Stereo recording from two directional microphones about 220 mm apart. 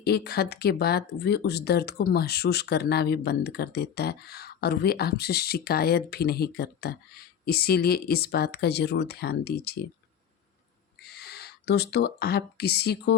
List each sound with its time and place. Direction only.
0.0 s speech: 45° left (ahead or behind)
11.0 s speech: 45° left (ahead or behind)